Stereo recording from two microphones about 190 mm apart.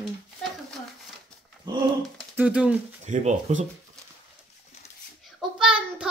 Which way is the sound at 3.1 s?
40° right (ahead or behind).